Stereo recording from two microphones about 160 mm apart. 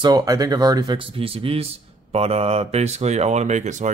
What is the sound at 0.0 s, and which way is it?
Speech, 25° right (ahead or behind).